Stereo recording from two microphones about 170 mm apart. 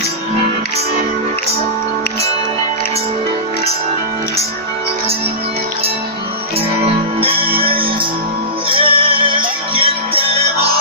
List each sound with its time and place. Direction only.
7.2 s music: 35° right (ahead or behind)